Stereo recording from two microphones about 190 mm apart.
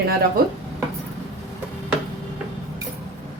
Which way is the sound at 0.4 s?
50° right (ahead or behind).